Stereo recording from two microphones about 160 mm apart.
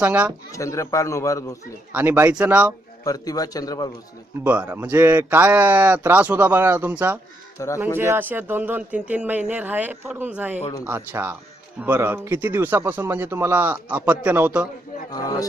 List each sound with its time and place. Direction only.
0.0 s speech: 10° right (ahead or behind)
0.5 s a man's voice: 20° left (ahead or behind)
1.9 s speech: 10° right (ahead or behind)
3.0 s a man's voice: 20° left (ahead or behind)
4.4 s speech: 10° right (ahead or behind)
7.6 s a man's voice: 20° left (ahead or behind)
7.9 s speech: 15° right (ahead or behind)
15.1 s a man's voice: 25° left (ahead or behind)